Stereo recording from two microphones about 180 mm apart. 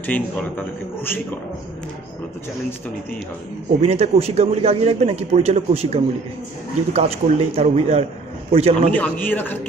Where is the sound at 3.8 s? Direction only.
35° right (ahead or behind).